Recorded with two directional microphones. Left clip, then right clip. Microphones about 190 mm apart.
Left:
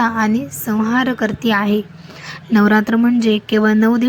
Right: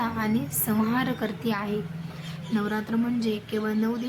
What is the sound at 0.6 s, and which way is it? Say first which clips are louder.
A woman's voice: left 10 dB; 25° left (ahead or behind).